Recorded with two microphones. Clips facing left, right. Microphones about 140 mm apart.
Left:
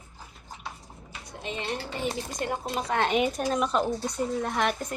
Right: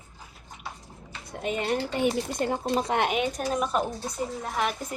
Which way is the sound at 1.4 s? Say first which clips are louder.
Right 6 dB; 50° right (ahead or behind).